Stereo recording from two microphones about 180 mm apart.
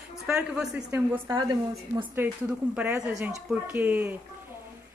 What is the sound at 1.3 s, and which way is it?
Speech, 25° right (ahead or behind).